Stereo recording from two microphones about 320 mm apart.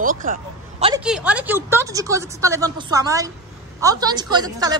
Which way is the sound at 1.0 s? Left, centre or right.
Centre.